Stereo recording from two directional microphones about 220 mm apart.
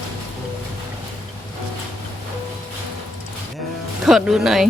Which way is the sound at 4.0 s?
Centre (ahead or behind).